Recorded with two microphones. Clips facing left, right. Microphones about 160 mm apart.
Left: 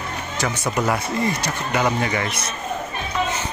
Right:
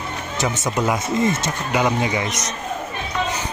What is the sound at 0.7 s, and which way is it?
Speech, 20° right (ahead or behind).